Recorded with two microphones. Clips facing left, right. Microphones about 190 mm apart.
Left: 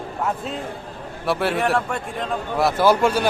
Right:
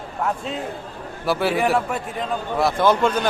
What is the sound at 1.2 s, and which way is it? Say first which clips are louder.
A man's voice: right 1 dB; centre (ahead or behind).